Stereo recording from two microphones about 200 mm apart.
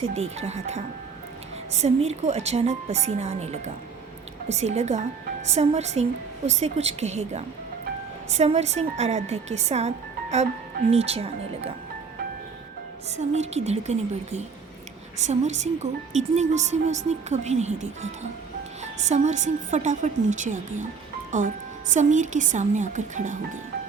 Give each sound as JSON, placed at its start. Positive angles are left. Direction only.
{"t": 0.1, "sound": "a woman's voice", "side_deg": -35}
{"t": 10.9, "sound": "speech", "side_deg": -30}
{"t": 13.1, "sound": "a woman's voice", "side_deg": -35}